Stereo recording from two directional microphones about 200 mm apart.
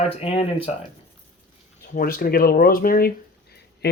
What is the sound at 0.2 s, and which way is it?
Speech, 30° left (ahead or behind).